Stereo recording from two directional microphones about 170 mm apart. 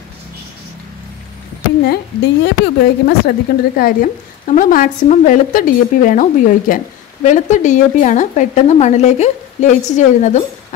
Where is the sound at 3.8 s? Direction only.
60° left (ahead or behind).